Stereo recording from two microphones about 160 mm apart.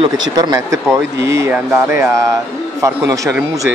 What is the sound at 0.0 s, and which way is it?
Speech, 25° right (ahead or behind).